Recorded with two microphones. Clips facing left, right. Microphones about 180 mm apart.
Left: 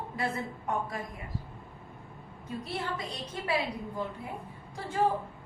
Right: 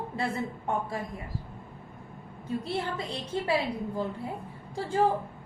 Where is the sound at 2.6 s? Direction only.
30° right (ahead or behind).